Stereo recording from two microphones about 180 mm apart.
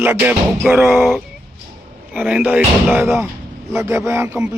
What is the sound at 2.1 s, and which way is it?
Music, 10° right (ahead or behind).